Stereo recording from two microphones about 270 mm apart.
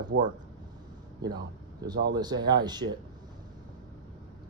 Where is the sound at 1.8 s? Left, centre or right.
Centre.